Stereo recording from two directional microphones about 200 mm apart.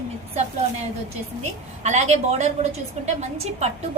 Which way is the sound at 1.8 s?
35° right (ahead or behind).